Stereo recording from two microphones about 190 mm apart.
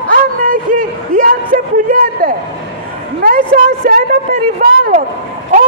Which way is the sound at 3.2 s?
45° right (ahead or behind).